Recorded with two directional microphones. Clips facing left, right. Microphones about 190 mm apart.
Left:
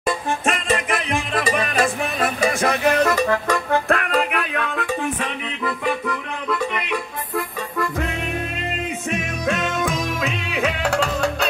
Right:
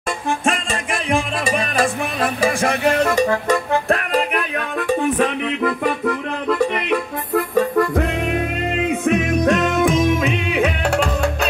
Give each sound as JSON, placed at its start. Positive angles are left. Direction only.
{"t": 1.1, "sound": "music", "side_deg": -25}
{"t": 3.9, "sound": "music", "side_deg": -35}
{"t": 4.7, "sound": "music", "side_deg": -50}
{"t": 9.0, "sound": "music", "side_deg": -55}
{"t": 9.8, "sound": "music", "side_deg": -25}